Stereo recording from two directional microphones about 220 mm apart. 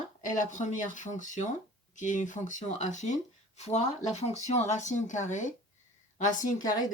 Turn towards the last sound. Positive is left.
turn(degrees=15)  # may be behind; listen again after turning